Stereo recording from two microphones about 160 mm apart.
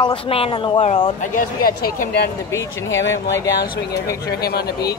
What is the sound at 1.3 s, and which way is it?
Speech, 65° left (ahead or behind).